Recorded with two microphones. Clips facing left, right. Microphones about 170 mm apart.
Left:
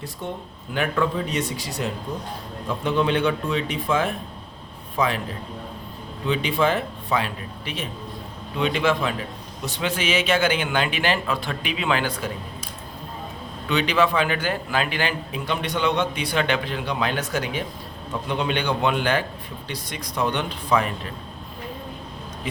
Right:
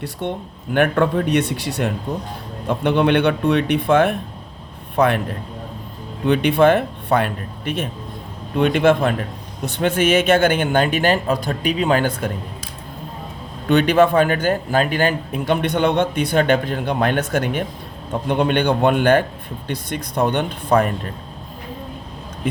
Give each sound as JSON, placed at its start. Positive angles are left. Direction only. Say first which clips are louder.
{"t": 0.7, "sound": "speech", "louder": "right 7 dB", "side_deg": -60}
{"t": 6.2, "sound": "a man's voice", "louder": "right 8 dB", "side_deg": -65}
{"t": 13.7, "sound": "a man's voice", "louder": "right 7 dB", "side_deg": -50}